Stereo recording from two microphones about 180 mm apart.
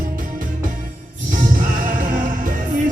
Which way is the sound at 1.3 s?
50° right (ahead or behind).